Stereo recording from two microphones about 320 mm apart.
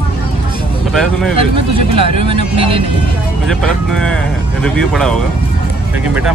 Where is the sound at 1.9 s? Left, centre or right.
Right.